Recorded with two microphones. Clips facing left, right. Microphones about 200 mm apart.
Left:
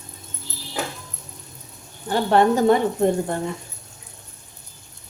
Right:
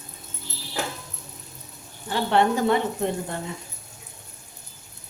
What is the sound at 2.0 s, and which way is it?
Speech, 45° left (ahead or behind).